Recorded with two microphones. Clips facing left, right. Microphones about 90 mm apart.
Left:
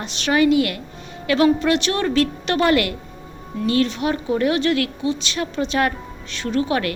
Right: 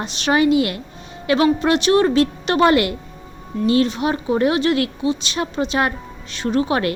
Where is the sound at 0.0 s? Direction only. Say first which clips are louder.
Right 1 dB; 25° right (ahead or behind).